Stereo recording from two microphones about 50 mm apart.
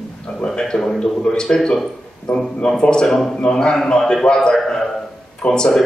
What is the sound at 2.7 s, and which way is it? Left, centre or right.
A man's voice, centre.